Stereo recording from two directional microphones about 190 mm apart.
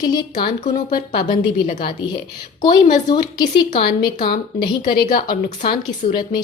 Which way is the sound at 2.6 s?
25° left (ahead or behind).